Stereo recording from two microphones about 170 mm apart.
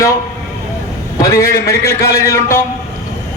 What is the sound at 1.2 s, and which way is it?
A man's voice, 20° left (ahead or behind).